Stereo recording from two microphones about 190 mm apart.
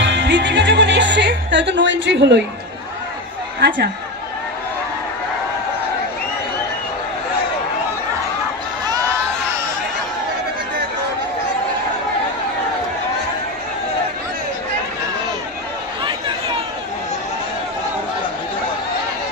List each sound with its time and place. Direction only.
0.0 s music: 65° right (ahead or behind)